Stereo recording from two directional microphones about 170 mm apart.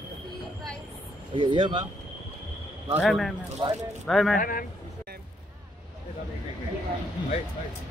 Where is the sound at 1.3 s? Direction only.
30° right (ahead or behind).